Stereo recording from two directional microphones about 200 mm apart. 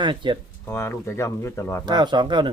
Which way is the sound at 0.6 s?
10° left (ahead or behind).